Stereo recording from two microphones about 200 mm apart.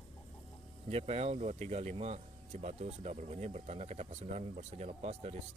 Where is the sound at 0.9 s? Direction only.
30° right (ahead or behind).